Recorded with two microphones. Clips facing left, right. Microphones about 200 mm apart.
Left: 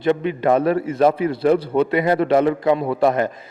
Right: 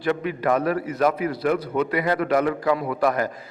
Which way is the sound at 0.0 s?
25° left (ahead or behind).